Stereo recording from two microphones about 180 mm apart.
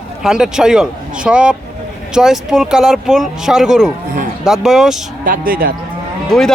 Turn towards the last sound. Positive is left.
turn(degrees=5)  # may be behind; listen again after turning